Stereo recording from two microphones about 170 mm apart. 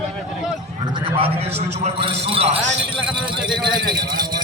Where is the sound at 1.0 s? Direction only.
30° right (ahead or behind).